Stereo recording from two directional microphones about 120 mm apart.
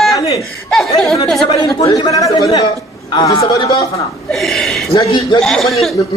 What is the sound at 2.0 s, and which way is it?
A man's voice, 30° left (ahead or behind).